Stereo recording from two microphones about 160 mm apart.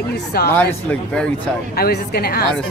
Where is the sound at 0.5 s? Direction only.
10° left (ahead or behind).